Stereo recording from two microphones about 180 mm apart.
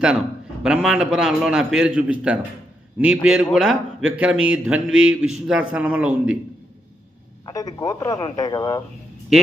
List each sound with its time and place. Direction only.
0.7 s a man's voice: 5° right (ahead or behind)
7.4 s a man's voice: 20° left (ahead or behind)